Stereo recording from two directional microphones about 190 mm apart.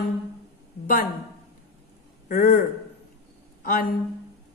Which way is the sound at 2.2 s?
50° left (ahead or behind).